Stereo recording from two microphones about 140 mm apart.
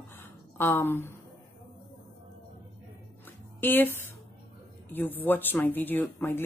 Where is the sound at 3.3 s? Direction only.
15° left (ahead or behind).